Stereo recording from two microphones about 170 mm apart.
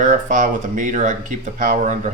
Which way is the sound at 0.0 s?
50° right (ahead or behind).